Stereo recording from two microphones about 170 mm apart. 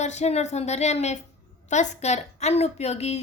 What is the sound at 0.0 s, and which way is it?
A woman's voice, 40° left (ahead or behind).